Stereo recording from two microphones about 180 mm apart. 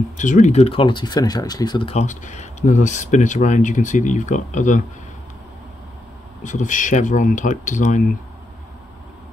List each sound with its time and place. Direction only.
0.2 s speech: 45° left (ahead or behind)
6.4 s speech: 45° left (ahead or behind)